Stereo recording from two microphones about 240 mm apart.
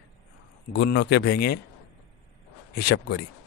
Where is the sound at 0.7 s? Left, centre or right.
Left.